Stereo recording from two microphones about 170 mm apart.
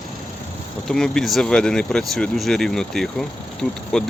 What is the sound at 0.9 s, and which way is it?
Speech, 5° left (ahead or behind).